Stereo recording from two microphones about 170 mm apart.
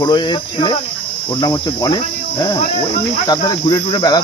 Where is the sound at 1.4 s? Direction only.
25° left (ahead or behind).